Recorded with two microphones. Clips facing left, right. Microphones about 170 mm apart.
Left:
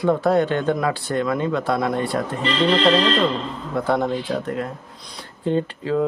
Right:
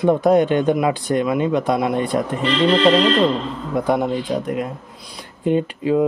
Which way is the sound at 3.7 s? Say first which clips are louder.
Right 2 dB; 15° right (ahead or behind).